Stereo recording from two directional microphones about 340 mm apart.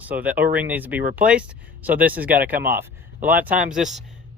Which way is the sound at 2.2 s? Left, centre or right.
Right.